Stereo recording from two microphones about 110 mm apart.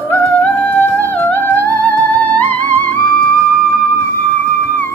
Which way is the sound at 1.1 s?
15° left (ahead or behind).